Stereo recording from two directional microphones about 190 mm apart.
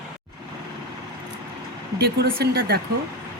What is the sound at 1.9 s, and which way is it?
Speech, 55° right (ahead or behind).